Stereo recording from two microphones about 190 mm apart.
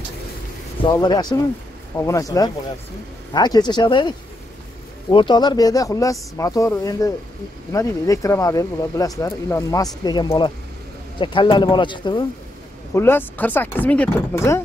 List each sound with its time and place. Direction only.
0.8 s speech: 20° left (ahead or behind)
5.1 s speech: 25° left (ahead or behind)
12.9 s speech: 10° left (ahead or behind)